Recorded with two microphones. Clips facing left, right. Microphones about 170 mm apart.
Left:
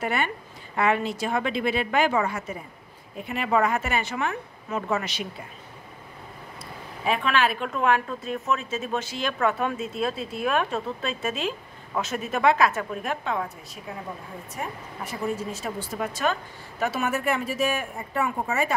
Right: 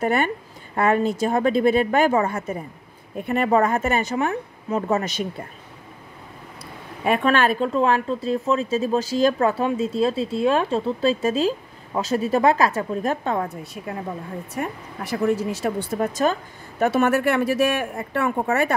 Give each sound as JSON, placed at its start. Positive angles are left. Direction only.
{"t": 0.0, "sound": "a woman's voice", "side_deg": -45}
{"t": 4.3, "sound": "speech", "side_deg": -30}
{"t": 7.1, "sound": "a woman's voice", "side_deg": -45}
{"t": 7.6, "sound": "speech", "side_deg": -30}
{"t": 14.5, "sound": "speech", "side_deg": -70}
{"t": 16.0, "sound": "speech", "side_deg": -40}
{"t": 16.8, "sound": "speech", "side_deg": -60}